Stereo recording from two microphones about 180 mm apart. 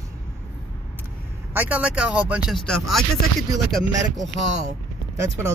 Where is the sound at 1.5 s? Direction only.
5° right (ahead or behind).